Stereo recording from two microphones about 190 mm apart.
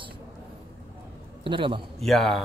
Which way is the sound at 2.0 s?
Centre (ahead or behind).